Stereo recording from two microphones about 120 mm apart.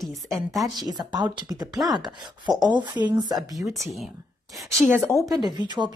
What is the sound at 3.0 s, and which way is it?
Speech, 35° right (ahead or behind).